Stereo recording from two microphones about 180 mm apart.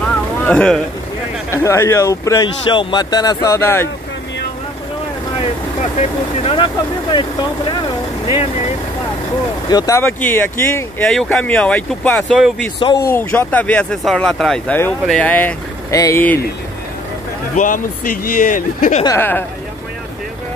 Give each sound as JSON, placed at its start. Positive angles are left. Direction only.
{"t": 0.4, "sound": "speech", "side_deg": 10}
{"t": 5.8, "sound": "speech", "side_deg": 35}
{"t": 9.7, "sound": "speech", "side_deg": 20}
{"t": 11.1, "sound": "speech", "side_deg": 5}
{"t": 12.7, "sound": "speech", "side_deg": 30}
{"t": 13.1, "sound": "speech", "side_deg": 10}
{"t": 17.6, "sound": "speech", "side_deg": 45}
{"t": 19.0, "sound": "speech", "side_deg": 10}